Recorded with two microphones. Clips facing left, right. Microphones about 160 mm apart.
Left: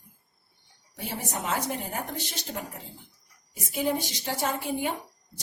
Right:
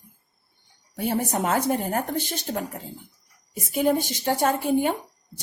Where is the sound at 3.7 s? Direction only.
55° right (ahead or behind).